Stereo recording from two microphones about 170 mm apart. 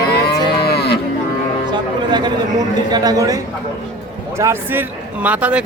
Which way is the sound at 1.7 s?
25° right (ahead or behind).